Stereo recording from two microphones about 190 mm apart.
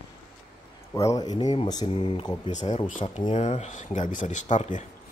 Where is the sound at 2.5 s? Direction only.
40° left (ahead or behind).